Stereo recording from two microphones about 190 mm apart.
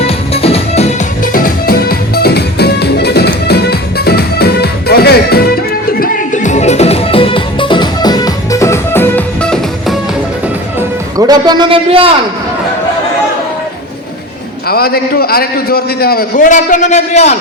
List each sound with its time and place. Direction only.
0.0 s music: 30° left (ahead or behind)
1.2 s music: 50° left (ahead or behind)
6.0 s music: 40° left (ahead or behind); by 10.0 s centre (ahead or behind)
10.8 s music: 20° right (ahead or behind)
14.7 s a man's voice: 55° left (ahead or behind); by 17.3 s 35° left (ahead or behind)